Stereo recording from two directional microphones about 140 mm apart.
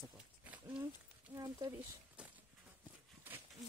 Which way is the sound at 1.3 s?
25° right (ahead or behind).